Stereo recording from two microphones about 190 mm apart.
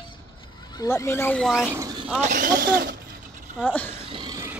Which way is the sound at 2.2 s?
45° right (ahead or behind).